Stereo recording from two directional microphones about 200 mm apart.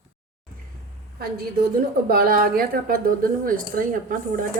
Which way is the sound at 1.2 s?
50° right (ahead or behind).